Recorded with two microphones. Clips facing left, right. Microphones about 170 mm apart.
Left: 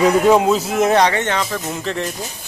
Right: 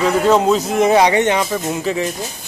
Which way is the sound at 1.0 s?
15° right (ahead or behind).